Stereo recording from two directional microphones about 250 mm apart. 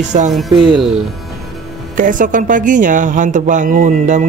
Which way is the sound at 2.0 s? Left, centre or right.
Right.